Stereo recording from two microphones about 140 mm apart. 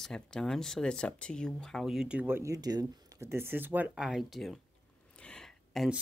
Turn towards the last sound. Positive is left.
turn(degrees=0)  # may be behind; listen again after turning